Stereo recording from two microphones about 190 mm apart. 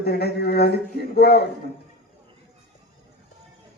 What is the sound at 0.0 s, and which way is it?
Speech, 55° left (ahead or behind).